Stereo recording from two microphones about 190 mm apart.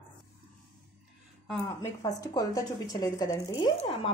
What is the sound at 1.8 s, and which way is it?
Speech, 20° left (ahead or behind).